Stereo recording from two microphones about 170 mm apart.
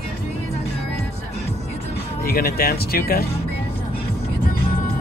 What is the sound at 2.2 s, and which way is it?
Speech, 60° left (ahead or behind).